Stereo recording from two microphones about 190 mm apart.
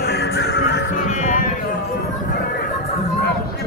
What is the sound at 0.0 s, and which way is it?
Music, 60° left (ahead or behind).